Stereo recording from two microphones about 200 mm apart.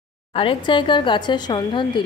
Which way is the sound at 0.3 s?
25° left (ahead or behind).